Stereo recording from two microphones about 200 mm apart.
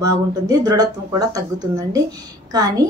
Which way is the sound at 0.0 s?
20° right (ahead or behind).